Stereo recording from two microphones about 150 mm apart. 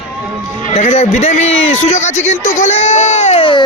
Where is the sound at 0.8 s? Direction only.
45° left (ahead or behind).